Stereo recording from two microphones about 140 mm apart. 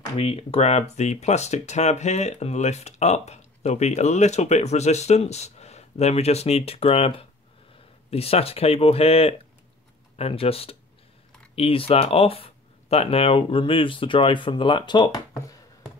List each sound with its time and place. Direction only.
0.2 s speech: 45° left (ahead or behind); by 15.5 s 30° left (ahead or behind)